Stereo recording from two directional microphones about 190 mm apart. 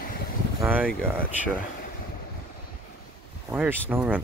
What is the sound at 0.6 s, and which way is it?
Speech, 10° right (ahead or behind).